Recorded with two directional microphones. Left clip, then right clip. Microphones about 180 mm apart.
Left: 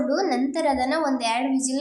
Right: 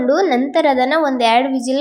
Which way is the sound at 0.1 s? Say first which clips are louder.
Right 9 dB; 30° right (ahead or behind).